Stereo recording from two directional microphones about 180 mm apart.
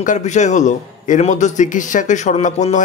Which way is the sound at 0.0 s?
45° left (ahead or behind).